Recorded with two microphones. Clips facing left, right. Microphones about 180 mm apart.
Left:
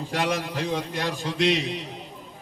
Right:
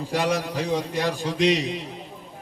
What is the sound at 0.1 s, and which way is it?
A man's voice, 10° right (ahead or behind).